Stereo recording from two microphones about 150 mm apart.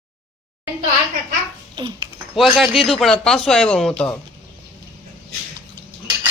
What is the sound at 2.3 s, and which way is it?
Speech, centre (ahead or behind).